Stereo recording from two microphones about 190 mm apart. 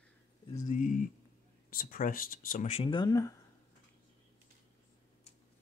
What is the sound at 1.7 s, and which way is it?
Speech, 45° left (ahead or behind).